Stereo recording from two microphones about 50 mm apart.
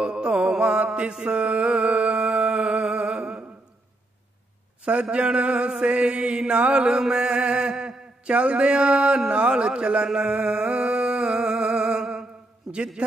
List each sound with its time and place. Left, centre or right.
0.0 s music: centre
5.1 s mantra: right
9.3 s a sound: right
12.7 s mantra: centre